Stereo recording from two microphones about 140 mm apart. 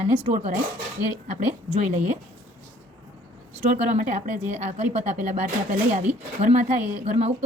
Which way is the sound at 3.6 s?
65° right (ahead or behind).